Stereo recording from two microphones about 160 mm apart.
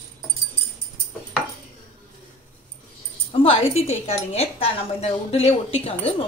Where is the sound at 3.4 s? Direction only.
40° left (ahead or behind).